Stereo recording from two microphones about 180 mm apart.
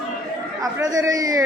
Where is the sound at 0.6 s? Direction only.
20° right (ahead or behind).